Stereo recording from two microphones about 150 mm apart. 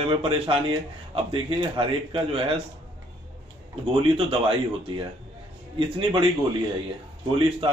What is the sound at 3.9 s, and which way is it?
A man's voice, 35° right (ahead or behind).